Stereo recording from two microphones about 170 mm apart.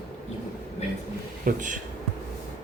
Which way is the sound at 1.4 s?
50° right (ahead or behind).